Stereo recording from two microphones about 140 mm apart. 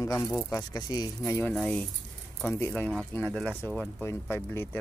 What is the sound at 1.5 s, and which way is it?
Speech, 5° left (ahead or behind).